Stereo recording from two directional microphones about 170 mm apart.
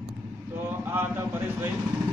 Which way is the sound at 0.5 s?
15° right (ahead or behind).